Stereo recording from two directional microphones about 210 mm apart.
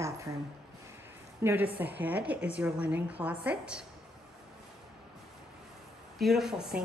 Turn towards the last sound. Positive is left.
turn(degrees=0)  # may be behind; listen again after turning